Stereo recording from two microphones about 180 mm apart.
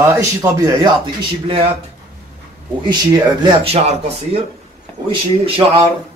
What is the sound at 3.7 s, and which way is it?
A man's voice, 35° right (ahead or behind).